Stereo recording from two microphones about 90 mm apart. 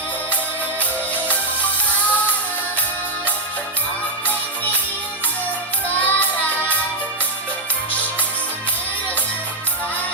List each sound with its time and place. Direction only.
6.0 s music: 15° left (ahead or behind)